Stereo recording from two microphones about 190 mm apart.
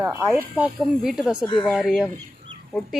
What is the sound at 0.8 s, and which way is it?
Speech, centre (ahead or behind).